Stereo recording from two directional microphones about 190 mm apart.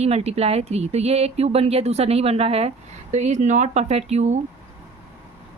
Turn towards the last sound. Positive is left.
turn(degrees=-35)  # may be behind; listen again after turning